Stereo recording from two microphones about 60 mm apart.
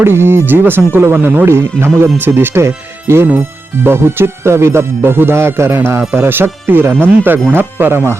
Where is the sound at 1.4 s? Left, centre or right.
Right.